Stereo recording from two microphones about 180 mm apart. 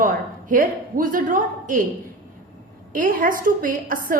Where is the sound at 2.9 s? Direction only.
50° right (ahead or behind).